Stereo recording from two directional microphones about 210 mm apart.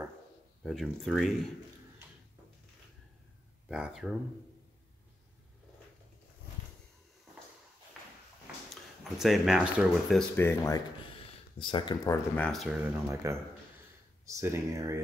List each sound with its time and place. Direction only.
0.7 s speech: centre (ahead or behind)
3.6 s speech: 5° right (ahead or behind)
9.2 s speech: centre (ahead or behind)
11.5 s speech: 25° left (ahead or behind)
12.4 s speech: centre (ahead or behind)
13.1 s speech: 15° right (ahead or behind)